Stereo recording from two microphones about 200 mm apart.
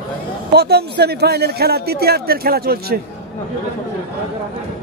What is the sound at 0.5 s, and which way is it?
A man's voice, 55° right (ahead or behind).